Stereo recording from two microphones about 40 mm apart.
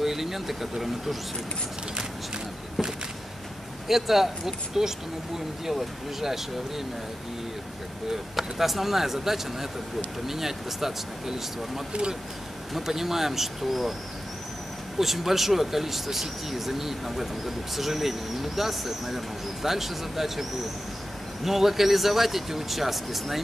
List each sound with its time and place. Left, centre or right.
0.0 s speech: centre
3.8 s speech: centre
8.1 s speech: centre
11.9 s speech: right
12.7 s speech: centre
15.0 s speech: centre
21.5 s speech: centre